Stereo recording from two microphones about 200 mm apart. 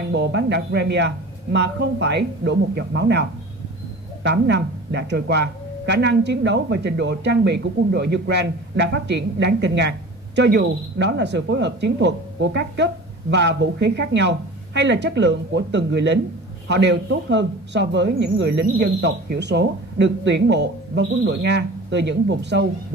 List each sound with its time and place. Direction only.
0.1 s a woman's voice: 60° right (ahead or behind)